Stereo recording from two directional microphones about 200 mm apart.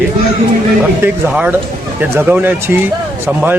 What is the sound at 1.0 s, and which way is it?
A man's voice, 10° right (ahead or behind).